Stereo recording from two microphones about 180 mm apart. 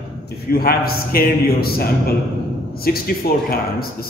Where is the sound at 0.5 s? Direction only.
55° left (ahead or behind).